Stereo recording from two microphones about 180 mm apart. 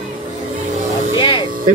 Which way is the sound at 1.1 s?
25° left (ahead or behind).